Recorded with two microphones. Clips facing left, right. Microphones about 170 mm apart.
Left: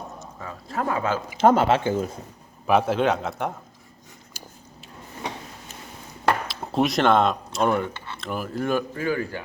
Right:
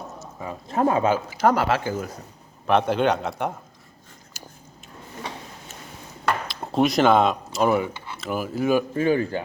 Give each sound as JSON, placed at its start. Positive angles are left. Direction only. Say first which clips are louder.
{"t": 0.2, "sound": "speech", "louder": "right 3 dB", "side_deg": -15}
{"t": 1.3, "sound": "speech", "louder": "left 2 dB", "side_deg": 25}
{"t": 2.6, "sound": "a man's voice", "louder": "even", "side_deg": 5}
{"t": 4.4, "sound": "a sound", "louder": "right 1 dB", "side_deg": 30}
{"t": 6.5, "sound": "speech", "louder": "right 2 dB", "side_deg": 0}
{"t": 9.0, "sound": "speech", "louder": "right 5 dB", "side_deg": -25}